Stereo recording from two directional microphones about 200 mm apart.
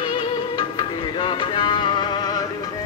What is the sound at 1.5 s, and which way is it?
Music, 25° left (ahead or behind).